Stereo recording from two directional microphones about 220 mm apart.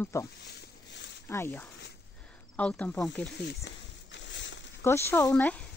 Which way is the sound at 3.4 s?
50° left (ahead or behind).